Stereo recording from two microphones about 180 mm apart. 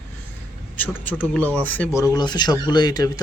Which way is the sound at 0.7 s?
10° left (ahead or behind).